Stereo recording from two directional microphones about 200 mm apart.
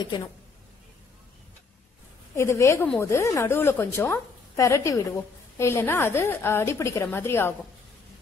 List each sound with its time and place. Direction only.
0.0 s speech: 20° left (ahead or behind)
2.3 s a woman's voice: 15° left (ahead or behind)